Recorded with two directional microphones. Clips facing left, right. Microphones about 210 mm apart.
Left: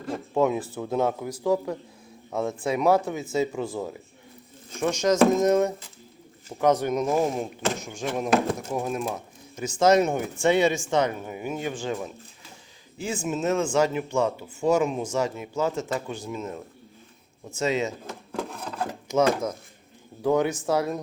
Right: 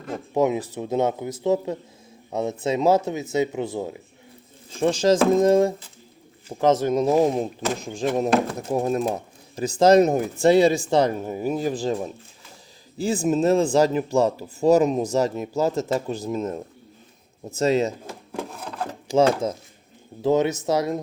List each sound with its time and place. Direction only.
0.3 s speech: 20° right (ahead or behind)
4.7 s speech: 30° right (ahead or behind)
18.3 s wood: 5° right (ahead or behind)
19.0 s speech: 30° right (ahead or behind)